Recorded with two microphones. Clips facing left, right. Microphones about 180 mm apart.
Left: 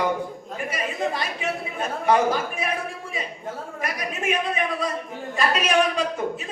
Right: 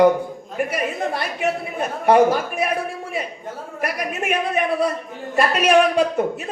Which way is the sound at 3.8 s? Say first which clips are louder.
Right 3 dB; 65° right (ahead or behind).